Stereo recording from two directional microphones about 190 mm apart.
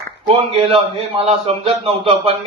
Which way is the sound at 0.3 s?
30° right (ahead or behind).